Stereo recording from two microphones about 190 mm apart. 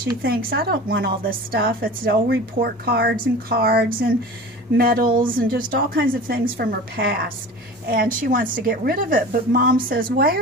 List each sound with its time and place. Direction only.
0.0 s a woman's voice: 50° right (ahead or behind)